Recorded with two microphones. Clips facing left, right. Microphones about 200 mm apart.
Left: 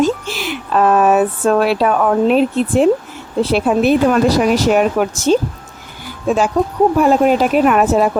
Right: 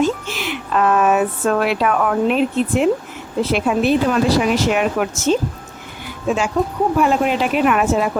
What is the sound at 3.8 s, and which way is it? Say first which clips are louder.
Speech: left 4 dB; 45° left (ahead or behind).